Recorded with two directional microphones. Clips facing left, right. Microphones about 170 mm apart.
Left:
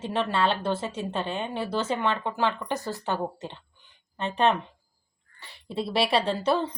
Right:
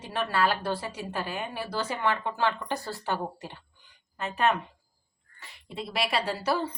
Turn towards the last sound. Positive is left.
turn(degrees=25)  # may be behind; listen again after turning